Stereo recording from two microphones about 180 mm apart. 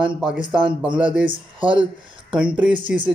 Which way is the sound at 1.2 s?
25° right (ahead or behind).